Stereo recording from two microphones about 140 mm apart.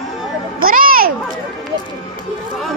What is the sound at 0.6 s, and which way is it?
Children playing, 90° right.